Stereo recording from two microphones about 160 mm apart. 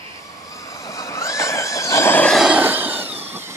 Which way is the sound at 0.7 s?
20° left (ahead or behind).